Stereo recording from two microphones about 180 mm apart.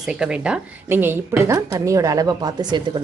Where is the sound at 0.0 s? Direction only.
5° right (ahead or behind).